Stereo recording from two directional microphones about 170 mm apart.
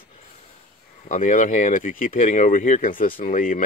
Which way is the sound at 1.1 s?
50° left (ahead or behind).